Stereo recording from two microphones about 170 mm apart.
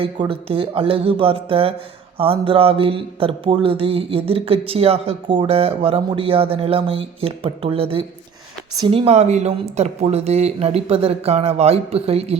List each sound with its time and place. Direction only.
0.0 s speech: 30° right (ahead or behind)